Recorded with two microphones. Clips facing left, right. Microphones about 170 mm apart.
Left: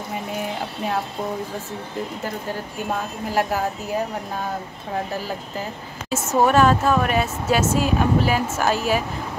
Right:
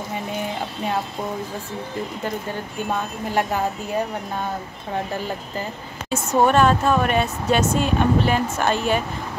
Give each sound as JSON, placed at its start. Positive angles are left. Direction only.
{"t": 2.9, "sound": "a woman's voice", "side_deg": 5}
{"t": 5.6, "sound": "a woman's voice", "side_deg": 0}